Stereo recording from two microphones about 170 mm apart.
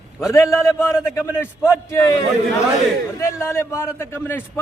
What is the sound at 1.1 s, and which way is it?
A man's voice, 15° left (ahead or behind).